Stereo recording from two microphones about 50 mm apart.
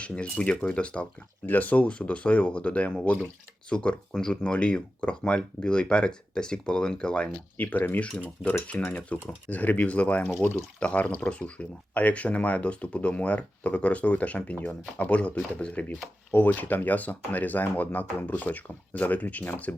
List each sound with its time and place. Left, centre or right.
0.0 s speech: left
1.5 s speech: left; by 7.3 s centre
7.5 s speech: left
16.3 s speech: left
19.7 s speech: left